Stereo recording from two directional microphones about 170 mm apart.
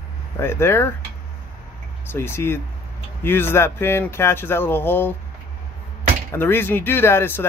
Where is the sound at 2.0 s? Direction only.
15° left (ahead or behind).